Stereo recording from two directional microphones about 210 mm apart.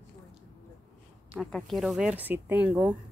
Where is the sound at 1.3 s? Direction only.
Centre (ahead or behind).